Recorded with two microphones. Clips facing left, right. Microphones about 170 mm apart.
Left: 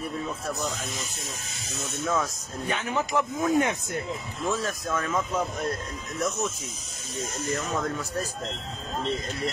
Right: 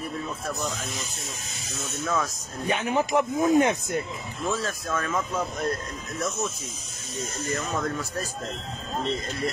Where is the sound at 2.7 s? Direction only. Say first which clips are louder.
Right 4 dB; 15° right (ahead or behind).